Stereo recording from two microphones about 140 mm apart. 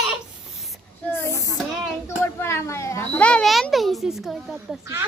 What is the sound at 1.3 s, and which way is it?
Speech, 25° left (ahead or behind).